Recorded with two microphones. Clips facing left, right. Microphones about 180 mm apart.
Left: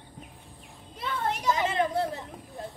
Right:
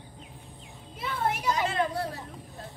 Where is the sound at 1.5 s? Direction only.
25° left (ahead or behind).